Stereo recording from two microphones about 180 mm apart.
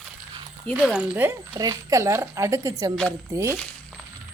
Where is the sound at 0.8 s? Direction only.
5° right (ahead or behind).